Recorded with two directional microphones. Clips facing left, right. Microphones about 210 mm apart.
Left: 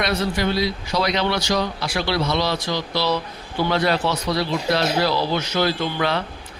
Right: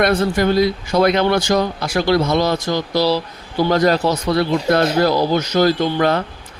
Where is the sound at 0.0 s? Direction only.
50° right (ahead or behind).